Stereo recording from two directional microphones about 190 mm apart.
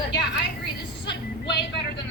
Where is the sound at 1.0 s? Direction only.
60° left (ahead or behind).